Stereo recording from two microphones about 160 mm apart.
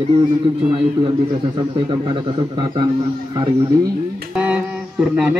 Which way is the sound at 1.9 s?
30° right (ahead or behind).